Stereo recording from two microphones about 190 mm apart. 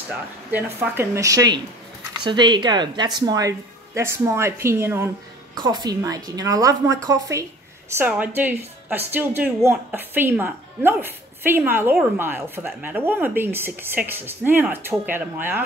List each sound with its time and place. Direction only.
0.5 s a woman's voice: 10° right (ahead or behind)